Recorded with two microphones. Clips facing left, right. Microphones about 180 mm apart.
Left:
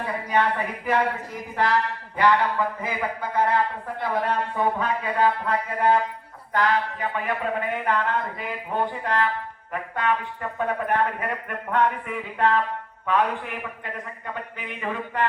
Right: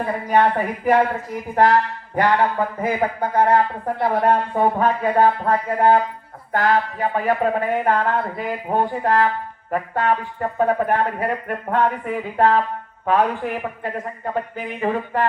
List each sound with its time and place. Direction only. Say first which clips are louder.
0.0 s speech: right 6 dB; 40° right (ahead or behind)